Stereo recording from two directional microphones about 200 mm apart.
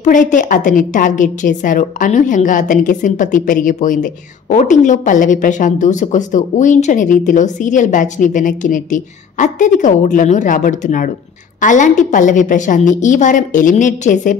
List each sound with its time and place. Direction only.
0.0 s a woman's voice: 40° left (ahead or behind)